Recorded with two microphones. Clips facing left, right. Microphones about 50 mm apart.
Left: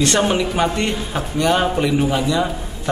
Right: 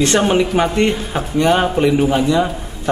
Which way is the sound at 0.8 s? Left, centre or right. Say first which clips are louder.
Right 6 dB; right.